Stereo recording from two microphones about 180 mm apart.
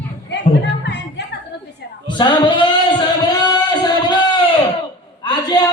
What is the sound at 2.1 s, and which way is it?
Singing, 25° left (ahead or behind).